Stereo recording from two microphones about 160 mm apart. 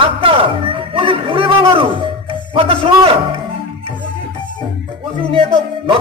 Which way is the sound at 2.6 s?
35° right (ahead or behind).